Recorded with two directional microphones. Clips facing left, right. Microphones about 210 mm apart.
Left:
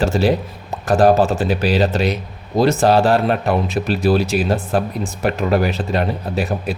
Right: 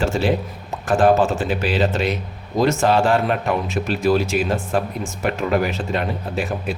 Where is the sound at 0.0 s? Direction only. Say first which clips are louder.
Left 3 dB; 40° left (ahead or behind).